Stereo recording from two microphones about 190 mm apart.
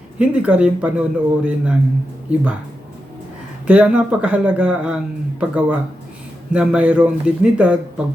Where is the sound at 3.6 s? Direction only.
5° right (ahead or behind).